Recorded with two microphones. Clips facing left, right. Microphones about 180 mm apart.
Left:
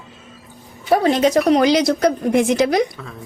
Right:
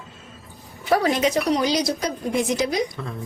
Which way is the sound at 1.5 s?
70° left (ahead or behind).